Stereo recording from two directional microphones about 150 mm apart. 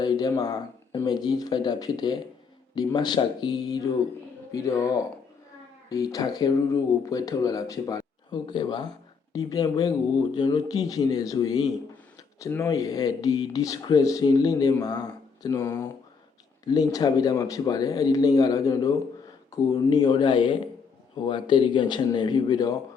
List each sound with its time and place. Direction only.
0.0 s speech: 25° left (ahead or behind)